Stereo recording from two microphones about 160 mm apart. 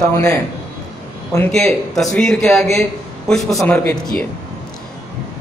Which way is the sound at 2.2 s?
5° left (ahead or behind).